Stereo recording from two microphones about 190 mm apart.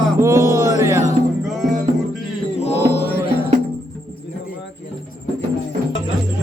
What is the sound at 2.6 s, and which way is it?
Mantra, 35° left (ahead or behind).